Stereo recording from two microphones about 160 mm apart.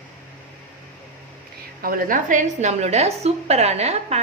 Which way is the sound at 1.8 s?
65° right (ahead or behind).